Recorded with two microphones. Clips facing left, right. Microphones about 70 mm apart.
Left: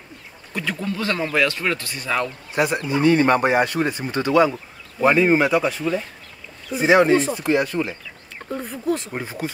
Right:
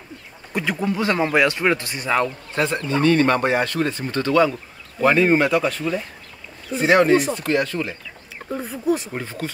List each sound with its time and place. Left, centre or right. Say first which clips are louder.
0.5 s speech: right 3 dB; centre
2.5 s speech: left 2 dB; centre
5.0 s speech: even; centre
8.5 s speech: right 2 dB; centre
9.1 s speech: left 1 dB; centre